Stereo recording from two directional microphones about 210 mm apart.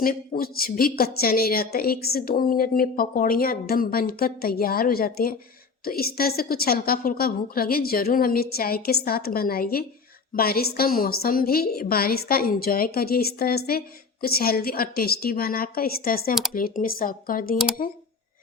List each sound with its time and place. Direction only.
0.0 s a woman's voice: 45° left (ahead or behind)